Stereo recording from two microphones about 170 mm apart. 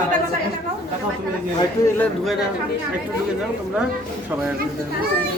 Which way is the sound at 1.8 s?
20° left (ahead or behind).